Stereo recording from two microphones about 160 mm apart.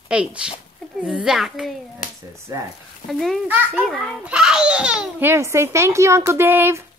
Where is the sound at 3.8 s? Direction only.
5° left (ahead or behind).